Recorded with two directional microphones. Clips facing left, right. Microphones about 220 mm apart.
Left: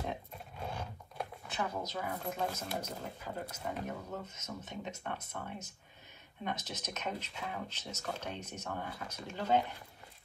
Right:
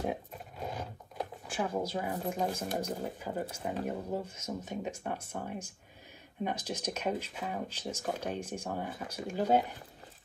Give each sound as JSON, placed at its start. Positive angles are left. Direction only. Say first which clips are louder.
{"t": 0.1, "sound": "a sound", "louder": "right 4 dB", "side_deg": -10}
{"t": 0.7, "sound": "speech", "louder": "right 3 dB", "side_deg": -15}
{"t": 3.8, "sound": "speech", "louder": "right 6 dB", "side_deg": -30}
{"t": 4.4, "sound": "speech", "louder": "right 6 dB", "side_deg": -10}